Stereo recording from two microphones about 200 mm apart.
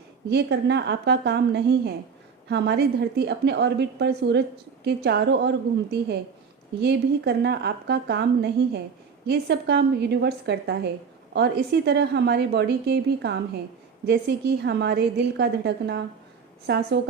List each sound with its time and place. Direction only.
0.3 s a woman's voice: 55° right (ahead or behind)